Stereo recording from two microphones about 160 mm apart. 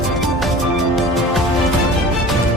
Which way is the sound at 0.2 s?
Centre (ahead or behind).